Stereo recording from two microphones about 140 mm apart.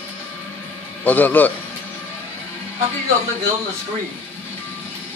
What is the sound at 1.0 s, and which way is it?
Speech, 10° left (ahead or behind).